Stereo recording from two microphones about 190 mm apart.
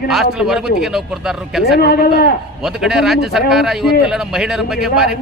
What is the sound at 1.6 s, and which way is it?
Speech, 55° left (ahead or behind).